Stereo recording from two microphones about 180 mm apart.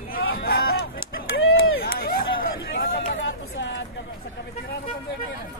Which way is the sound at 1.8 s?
55° left (ahead or behind).